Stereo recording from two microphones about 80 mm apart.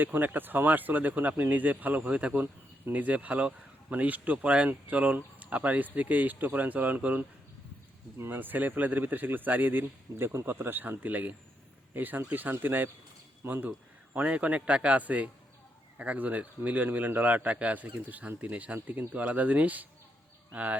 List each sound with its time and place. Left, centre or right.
0.0 s speech: right